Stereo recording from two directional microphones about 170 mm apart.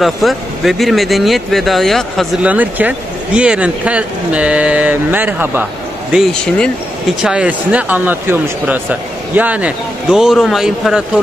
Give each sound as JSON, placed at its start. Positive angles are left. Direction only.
{"t": 0.0, "sound": "speech", "side_deg": 0}
{"t": 2.5, "sound": "speech", "side_deg": -10}
{"t": 6.1, "sound": "speech", "side_deg": 5}